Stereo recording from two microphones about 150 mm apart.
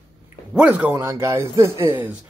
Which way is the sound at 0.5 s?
10° right (ahead or behind).